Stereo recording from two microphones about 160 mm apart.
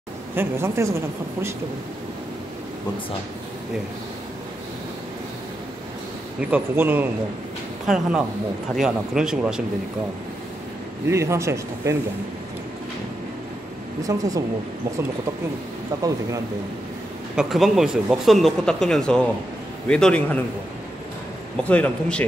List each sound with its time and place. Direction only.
0.4 s a woman's voice: 15° right (ahead or behind)
6.4 s a woman's voice: 10° right (ahead or behind)
11.1 s a woman's voice: 15° right (ahead or behind)
14.0 s speech: 20° right (ahead or behind)
16.0 s speech: 20° right (ahead or behind)
17.4 s speech: centre (ahead or behind)
21.6 s speech: 10° left (ahead or behind)